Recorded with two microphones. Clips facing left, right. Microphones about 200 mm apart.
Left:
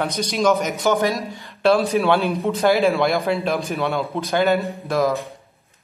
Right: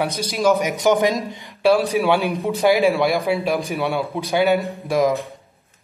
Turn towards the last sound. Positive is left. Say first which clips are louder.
# right 2 dB
turn(degrees=-15)  # may be behind; listen again after turning